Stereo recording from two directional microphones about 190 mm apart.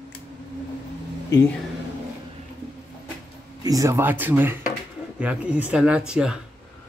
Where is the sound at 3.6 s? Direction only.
20° right (ahead or behind).